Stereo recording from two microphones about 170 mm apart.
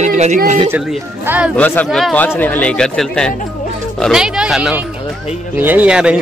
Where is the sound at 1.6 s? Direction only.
10° left (ahead or behind).